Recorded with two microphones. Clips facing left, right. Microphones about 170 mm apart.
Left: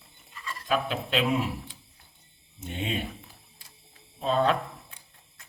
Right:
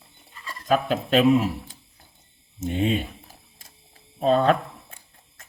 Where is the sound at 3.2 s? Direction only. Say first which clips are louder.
Right 3 dB; 45° right (ahead or behind).